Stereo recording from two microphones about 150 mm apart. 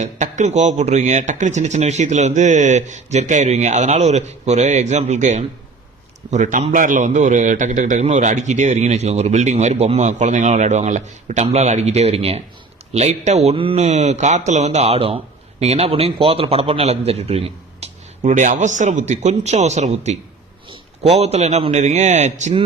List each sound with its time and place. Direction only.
0.0 s a man's voice: 50° right (ahead or behind)